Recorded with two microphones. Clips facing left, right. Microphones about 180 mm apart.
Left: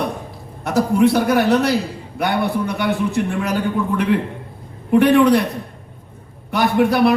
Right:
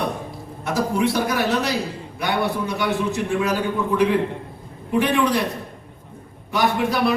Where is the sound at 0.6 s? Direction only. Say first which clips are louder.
Left 6 dB; 55° left (ahead or behind).